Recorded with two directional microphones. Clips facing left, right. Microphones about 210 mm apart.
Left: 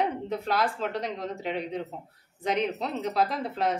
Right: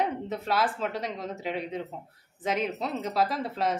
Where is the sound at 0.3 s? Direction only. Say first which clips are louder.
Even; centre (ahead or behind).